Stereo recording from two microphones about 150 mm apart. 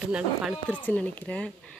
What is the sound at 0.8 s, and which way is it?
Speech, 10° left (ahead or behind).